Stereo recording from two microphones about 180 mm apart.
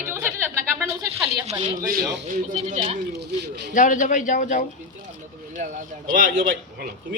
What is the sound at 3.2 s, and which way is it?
Speech, 70° right (ahead or behind).